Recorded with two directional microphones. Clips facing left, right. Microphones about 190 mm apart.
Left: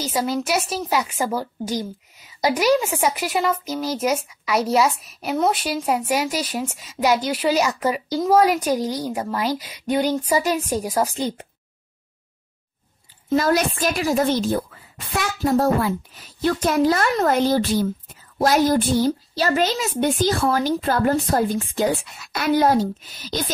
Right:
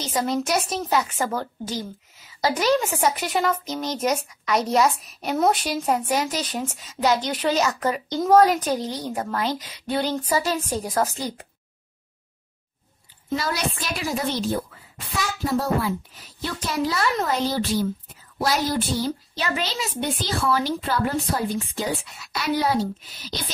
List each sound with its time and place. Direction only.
0.0 s speech: 5° left (ahead or behind)
13.4 s a woman's voice: 50° left (ahead or behind)
15.5 s a woman's voice: 50° left (ahead or behind)